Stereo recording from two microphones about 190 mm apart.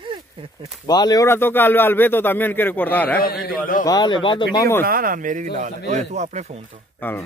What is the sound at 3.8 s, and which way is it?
Speech, 20° left (ahead or behind).